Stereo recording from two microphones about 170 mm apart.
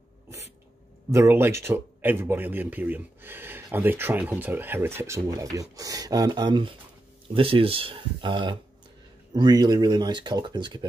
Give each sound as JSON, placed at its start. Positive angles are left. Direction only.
{"t": 1.1, "sound": "speech", "side_deg": -15}